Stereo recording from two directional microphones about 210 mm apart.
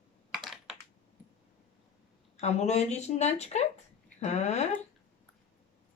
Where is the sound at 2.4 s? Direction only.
30° left (ahead or behind).